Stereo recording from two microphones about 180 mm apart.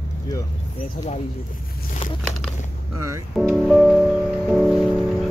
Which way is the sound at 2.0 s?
30° left (ahead or behind).